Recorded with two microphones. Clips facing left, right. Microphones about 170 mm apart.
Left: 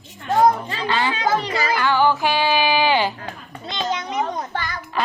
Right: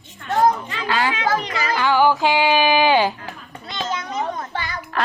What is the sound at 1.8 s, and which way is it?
Music, 10° right (ahead or behind).